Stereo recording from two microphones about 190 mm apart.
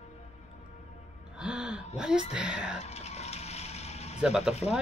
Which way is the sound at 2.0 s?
5° right (ahead or behind).